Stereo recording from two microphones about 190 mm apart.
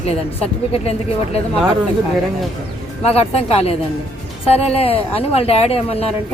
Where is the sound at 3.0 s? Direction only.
30° left (ahead or behind).